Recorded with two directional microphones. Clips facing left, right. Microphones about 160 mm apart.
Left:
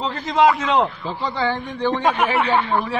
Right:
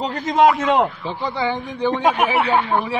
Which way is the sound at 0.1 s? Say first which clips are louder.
Right 2 dB; 50° right (ahead or behind).